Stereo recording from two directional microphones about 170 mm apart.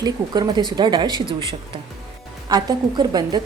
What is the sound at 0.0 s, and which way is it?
A woman's voice, 25° right (ahead or behind).